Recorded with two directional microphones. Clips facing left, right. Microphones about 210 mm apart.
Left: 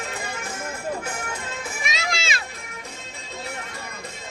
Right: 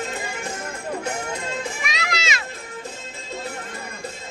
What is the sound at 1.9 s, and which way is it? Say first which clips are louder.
Children playing: right 1 dB; 30° left (ahead or behind).